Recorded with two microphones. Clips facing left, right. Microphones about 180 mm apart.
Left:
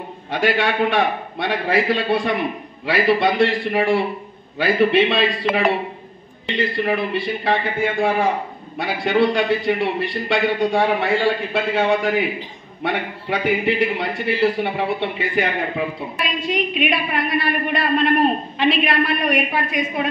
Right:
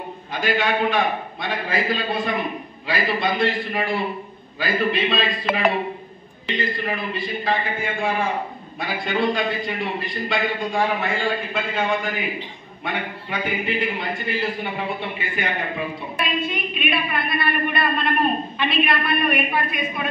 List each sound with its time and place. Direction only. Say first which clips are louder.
0.3 s a man's voice: left 3 dB; 75° left (ahead or behind)
6.5 s a man's voice: left 5 dB; 70° left (ahead or behind)
16.2 s a woman's voice: left 3 dB; 90° left